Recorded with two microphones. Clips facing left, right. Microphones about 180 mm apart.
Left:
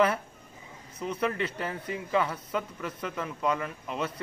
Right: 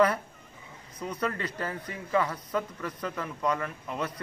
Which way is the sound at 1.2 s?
5° left (ahead or behind).